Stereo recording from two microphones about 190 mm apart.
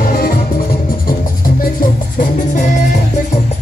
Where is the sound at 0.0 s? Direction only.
50° left (ahead or behind).